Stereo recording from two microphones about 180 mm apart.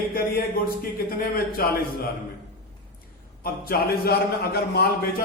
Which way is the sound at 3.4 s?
55° left (ahead or behind).